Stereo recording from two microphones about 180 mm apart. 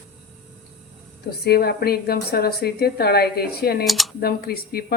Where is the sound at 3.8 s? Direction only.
Centre (ahead or behind).